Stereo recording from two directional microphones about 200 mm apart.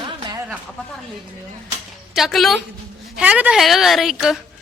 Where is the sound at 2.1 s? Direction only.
Centre (ahead or behind).